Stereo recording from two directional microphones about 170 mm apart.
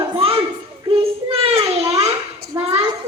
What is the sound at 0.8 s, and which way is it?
Child singing, 35° right (ahead or behind).